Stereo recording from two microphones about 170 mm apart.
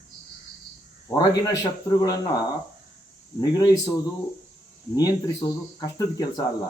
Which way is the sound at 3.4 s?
20° left (ahead or behind).